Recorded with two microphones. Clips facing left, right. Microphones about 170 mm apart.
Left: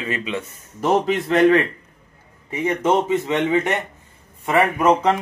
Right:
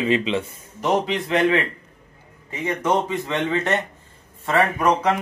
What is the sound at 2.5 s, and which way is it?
A man's voice, 25° left (ahead or behind).